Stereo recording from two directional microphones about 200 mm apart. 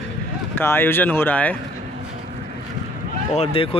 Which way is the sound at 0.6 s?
10° left (ahead or behind).